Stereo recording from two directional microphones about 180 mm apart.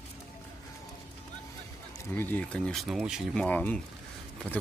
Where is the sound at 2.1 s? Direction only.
10° left (ahead or behind).